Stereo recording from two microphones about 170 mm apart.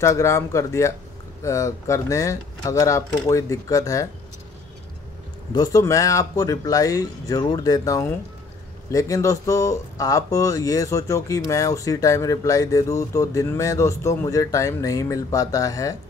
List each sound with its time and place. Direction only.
0.0 s speech: 15° left (ahead or behind)
5.5 s speech: 20° left (ahead or behind)